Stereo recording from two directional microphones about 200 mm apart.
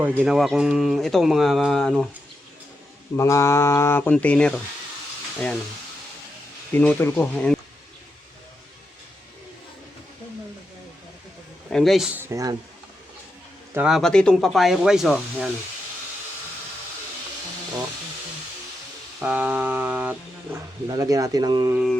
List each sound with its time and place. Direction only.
0.0 s speech: 5° right (ahead or behind)
3.2 s speech: 15° left (ahead or behind)
6.7 s speech: 10° left (ahead or behind)
11.7 s speech: centre (ahead or behind); by 12.5 s 15° right (ahead or behind)
13.7 s speech: centre (ahead or behind)
19.2 s a sound: 5° right (ahead or behind)
20.8 s speech: 20° right (ahead or behind)